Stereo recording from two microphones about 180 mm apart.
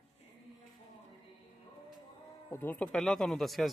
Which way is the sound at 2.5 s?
10° left (ahead or behind).